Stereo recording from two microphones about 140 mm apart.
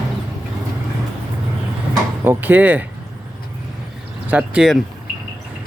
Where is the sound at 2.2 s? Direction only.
10° right (ahead or behind).